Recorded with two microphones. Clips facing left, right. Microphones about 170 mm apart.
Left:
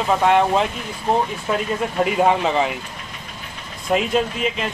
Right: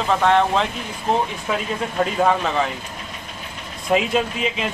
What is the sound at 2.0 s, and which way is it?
Speech, 20° left (ahead or behind).